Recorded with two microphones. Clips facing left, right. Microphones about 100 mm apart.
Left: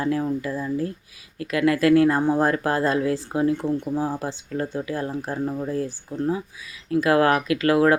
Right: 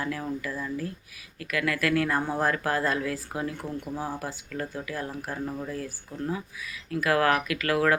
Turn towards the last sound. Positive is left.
turn(degrees=25)  # may be behind; listen again after turning